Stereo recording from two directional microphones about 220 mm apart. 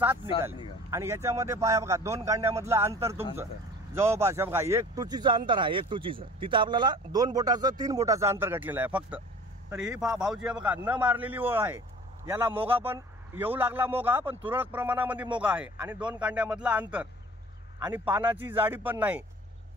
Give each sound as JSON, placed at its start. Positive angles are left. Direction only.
{"t": 0.8, "sound": "speech", "side_deg": -15}